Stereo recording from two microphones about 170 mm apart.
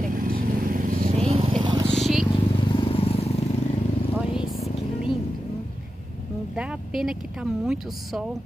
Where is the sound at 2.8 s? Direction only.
35° left (ahead or behind).